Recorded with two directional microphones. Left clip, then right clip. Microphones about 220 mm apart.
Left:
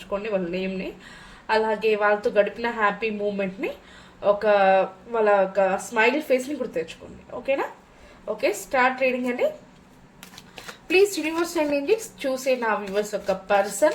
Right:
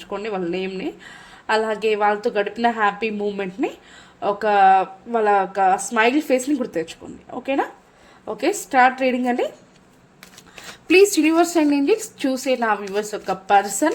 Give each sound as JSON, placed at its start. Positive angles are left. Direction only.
{"t": 0.0, "sound": "a woman's voice", "side_deg": -45}
{"t": 10.8, "sound": "a woman's voice", "side_deg": -50}